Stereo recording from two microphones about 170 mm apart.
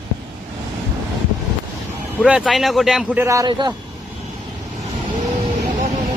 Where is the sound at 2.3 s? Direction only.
Centre (ahead or behind); by 3.7 s 25° right (ahead or behind).